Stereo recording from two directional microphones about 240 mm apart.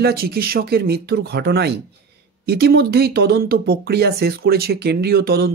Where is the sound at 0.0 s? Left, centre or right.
Right.